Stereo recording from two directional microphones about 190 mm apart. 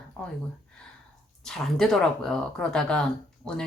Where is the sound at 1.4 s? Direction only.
Centre (ahead or behind).